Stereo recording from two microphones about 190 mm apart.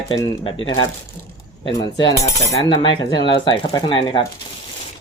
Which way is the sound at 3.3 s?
25° left (ahead or behind).